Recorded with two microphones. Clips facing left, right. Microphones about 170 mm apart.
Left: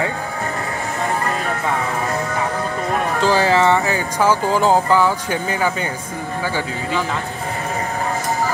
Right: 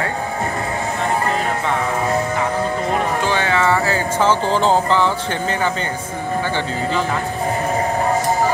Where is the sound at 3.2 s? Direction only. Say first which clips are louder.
Left 7 dB; 35° left (ahead or behind); by 5.7 s 10° left (ahead or behind).